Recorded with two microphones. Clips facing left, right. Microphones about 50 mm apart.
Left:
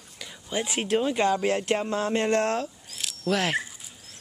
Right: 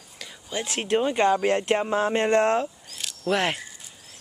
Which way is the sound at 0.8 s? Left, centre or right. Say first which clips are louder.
Right 3 dB; centre.